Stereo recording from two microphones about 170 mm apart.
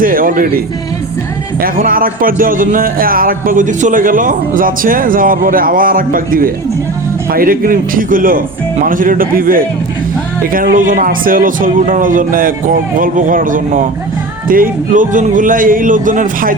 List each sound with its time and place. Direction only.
0.0 s speech: 55° right (ahead or behind)
1.6 s speech: 55° right (ahead or behind)
10.8 s speech: 50° right (ahead or behind)